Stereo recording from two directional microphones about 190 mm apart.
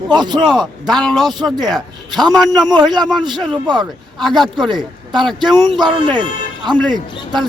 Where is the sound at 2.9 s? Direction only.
20° right (ahead or behind).